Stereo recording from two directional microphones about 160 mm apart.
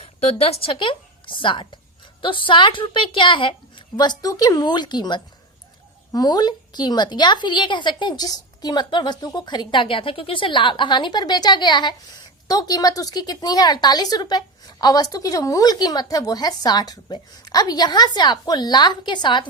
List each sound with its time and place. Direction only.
0.0 s a woman's voice: 40° left (ahead or behind)